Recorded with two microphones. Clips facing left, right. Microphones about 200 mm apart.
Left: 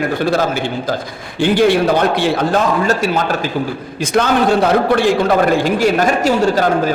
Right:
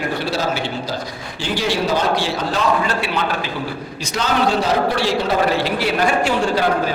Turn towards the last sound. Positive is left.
turn(degrees=45)  # may be behind; listen again after turning